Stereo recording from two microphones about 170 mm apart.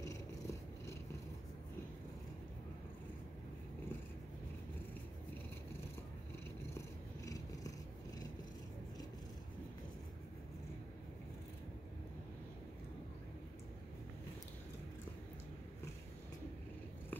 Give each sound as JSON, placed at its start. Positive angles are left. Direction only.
{"t": 0.0, "sound": "cat", "side_deg": 20}
{"t": 7.2, "sound": "cat", "side_deg": 20}